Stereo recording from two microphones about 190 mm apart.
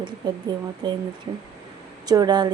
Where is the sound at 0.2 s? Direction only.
20° right (ahead or behind).